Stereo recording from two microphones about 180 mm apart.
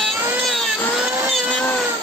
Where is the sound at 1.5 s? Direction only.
10° left (ahead or behind).